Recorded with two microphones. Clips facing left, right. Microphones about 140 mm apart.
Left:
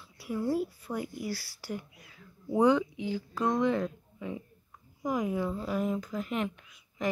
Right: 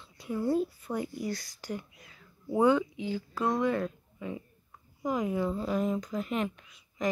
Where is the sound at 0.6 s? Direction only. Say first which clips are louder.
Right 2 dB; 10° left (ahead or behind).